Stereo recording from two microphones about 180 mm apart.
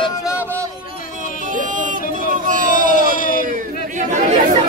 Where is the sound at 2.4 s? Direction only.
45° right (ahead or behind).